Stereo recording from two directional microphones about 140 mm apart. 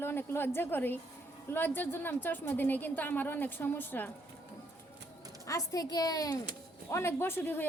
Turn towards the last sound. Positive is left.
turn(degrees=15)  # may be behind; listen again after turning